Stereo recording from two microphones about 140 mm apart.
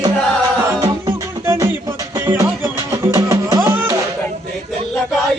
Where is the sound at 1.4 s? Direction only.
20° right (ahead or behind).